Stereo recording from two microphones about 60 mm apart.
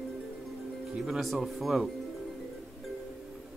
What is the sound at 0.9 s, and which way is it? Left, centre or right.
Speech, centre.